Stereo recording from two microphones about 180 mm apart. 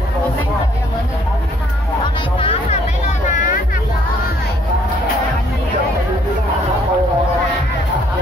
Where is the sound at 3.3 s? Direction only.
45° left (ahead or behind).